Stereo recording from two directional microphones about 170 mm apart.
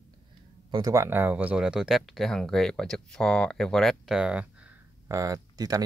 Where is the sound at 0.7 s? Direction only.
20° right (ahead or behind).